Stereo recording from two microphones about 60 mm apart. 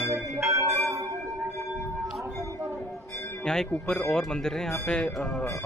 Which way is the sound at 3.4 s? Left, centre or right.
Centre.